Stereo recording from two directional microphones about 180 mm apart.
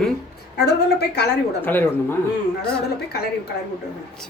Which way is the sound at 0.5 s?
65° left (ahead or behind).